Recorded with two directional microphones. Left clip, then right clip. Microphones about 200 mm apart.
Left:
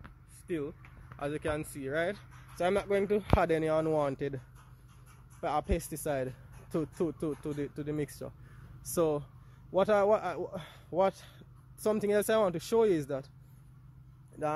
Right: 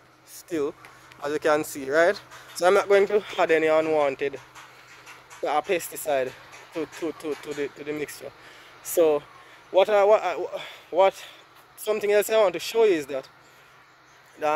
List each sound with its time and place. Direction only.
0.5 s speech: 5° right (ahead or behind); by 4.3 s 20° left (ahead or behind)
5.4 s a man's voice: 15° left (ahead or behind)
14.4 s a man's voice: 20° left (ahead or behind)